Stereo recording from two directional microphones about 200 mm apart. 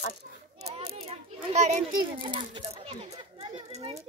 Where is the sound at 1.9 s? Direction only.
20° right (ahead or behind).